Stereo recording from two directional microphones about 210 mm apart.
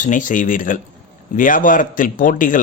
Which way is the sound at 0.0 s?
40° left (ahead or behind).